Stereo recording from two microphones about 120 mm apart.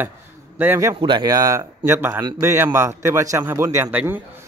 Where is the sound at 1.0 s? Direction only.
40° right (ahead or behind).